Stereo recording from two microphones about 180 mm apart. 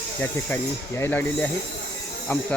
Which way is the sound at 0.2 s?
10° left (ahead or behind).